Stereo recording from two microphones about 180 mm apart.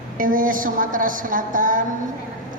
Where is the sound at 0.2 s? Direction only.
50° right (ahead or behind).